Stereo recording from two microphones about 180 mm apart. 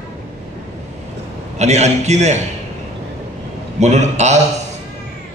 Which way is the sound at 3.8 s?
40° right (ahead or behind).